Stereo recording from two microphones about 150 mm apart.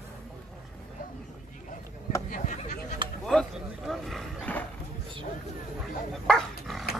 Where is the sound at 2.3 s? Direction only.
55° left (ahead or behind).